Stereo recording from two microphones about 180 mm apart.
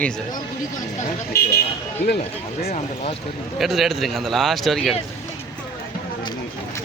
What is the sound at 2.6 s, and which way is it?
Speech, 35° left (ahead or behind).